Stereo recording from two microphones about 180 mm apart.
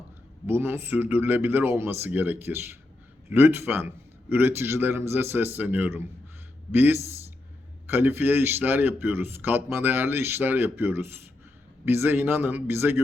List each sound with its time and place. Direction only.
0.4 s speech: 15° right (ahead or behind)